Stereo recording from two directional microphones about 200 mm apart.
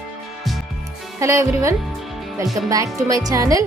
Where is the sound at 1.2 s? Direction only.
15° right (ahead or behind).